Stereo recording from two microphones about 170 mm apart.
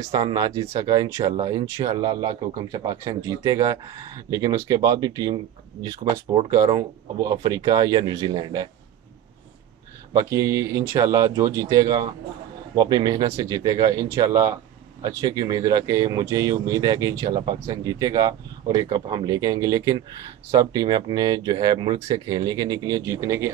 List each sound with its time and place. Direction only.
0.0 s speech: 25° right (ahead or behind)
10.1 s speech: 15° right (ahead or behind)